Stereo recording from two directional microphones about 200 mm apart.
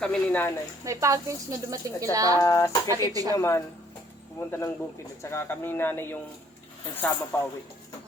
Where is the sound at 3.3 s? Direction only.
15° left (ahead or behind).